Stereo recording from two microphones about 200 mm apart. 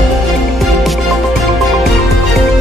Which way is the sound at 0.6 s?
Centre (ahead or behind).